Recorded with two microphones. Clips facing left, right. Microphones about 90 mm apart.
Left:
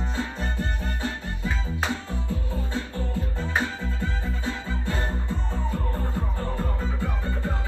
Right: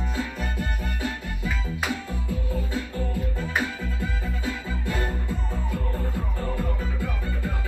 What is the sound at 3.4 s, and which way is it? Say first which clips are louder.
Music: left 2 dB; 30° left (ahead or behind).